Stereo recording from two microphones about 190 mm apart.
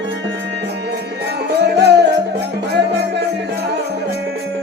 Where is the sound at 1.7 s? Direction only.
60° right (ahead or behind).